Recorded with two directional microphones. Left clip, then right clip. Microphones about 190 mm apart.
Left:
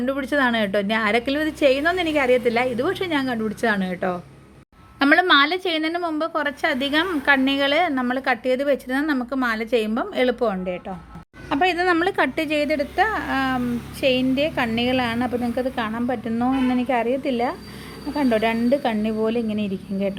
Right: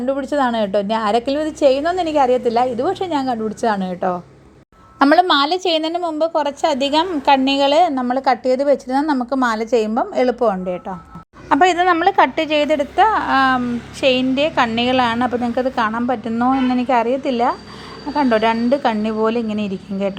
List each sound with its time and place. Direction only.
0.0 s a woman's voice: centre (ahead or behind); by 9.7 s 15° right (ahead or behind)
9.9 s a woman's voice: 15° left (ahead or behind)
10.2 s a woman's voice: 5° right (ahead or behind)
11.4 s a woman's voice: 20° right (ahead or behind)
11.9 s a woman's voice: 15° left (ahead or behind)
12.6 s a woman's voice: centre (ahead or behind)